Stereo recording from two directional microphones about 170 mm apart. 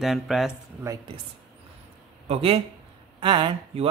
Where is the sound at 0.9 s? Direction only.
15° right (ahead or behind).